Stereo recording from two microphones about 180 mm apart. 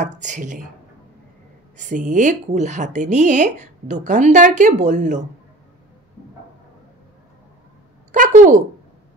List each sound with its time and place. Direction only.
0.0 s speech: 40° right (ahead or behind)
1.8 s speech: 45° right (ahead or behind)
8.1 s a sound: 45° right (ahead or behind)